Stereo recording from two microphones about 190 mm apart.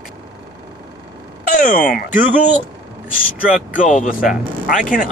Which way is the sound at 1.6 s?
45° left (ahead or behind).